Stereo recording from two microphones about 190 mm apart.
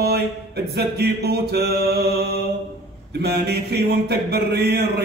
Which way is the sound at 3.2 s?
60° right (ahead or behind).